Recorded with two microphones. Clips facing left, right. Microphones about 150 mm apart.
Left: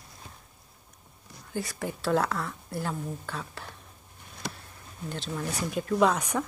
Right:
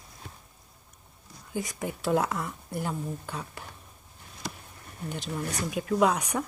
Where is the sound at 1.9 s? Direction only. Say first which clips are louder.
Even; 15° right (ahead or behind).